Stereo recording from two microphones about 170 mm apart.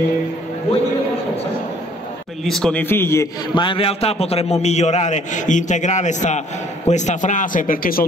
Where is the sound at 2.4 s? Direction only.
5° left (ahead or behind).